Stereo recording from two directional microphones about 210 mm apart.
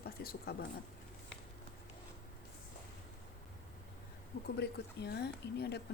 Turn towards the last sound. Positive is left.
turn(degrees=50)  # may be behind; listen again after turning